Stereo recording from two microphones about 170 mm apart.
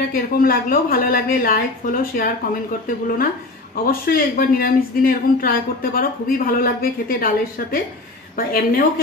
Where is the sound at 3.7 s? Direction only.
60° left (ahead or behind).